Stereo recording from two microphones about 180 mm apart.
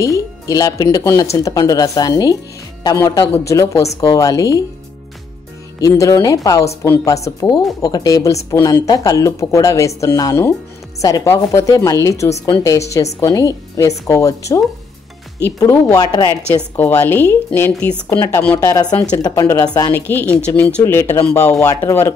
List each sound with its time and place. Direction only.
0.0 s speech: 20° left (ahead or behind)
5.8 s speech: 20° left (ahead or behind)
15.6 s speech: 15° left (ahead or behind)
16.7 s speech: 10° left (ahead or behind)
18.7 s speech: 20° left (ahead or behind)